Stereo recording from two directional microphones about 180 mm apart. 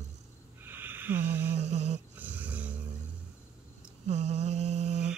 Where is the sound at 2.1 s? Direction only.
10° right (ahead or behind).